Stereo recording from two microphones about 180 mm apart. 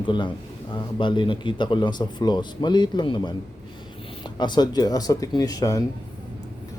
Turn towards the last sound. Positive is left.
turn(degrees=20)  # may be behind; listen again after turning